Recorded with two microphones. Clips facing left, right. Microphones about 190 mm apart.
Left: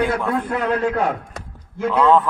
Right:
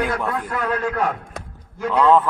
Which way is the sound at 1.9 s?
Centre (ahead or behind).